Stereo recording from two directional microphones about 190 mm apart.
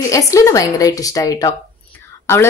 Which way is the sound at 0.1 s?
15° left (ahead or behind).